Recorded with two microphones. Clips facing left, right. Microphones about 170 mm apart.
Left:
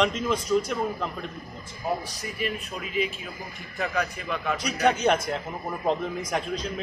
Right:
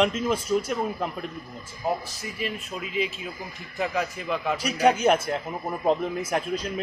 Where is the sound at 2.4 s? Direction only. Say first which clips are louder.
Even; 25° right (ahead or behind).